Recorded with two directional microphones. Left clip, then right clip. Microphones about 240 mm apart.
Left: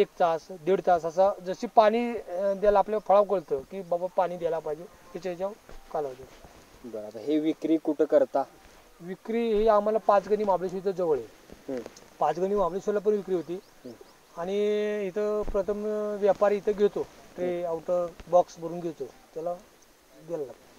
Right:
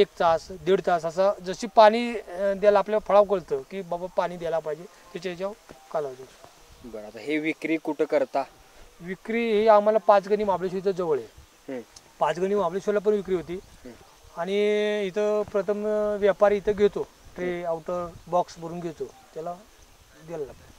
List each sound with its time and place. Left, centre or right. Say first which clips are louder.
0.0 s speech: right 3 dB; right
7.2 s speech: even; centre
9.0 s speech: right 2 dB; right
12.2 s speech: right 1 dB; right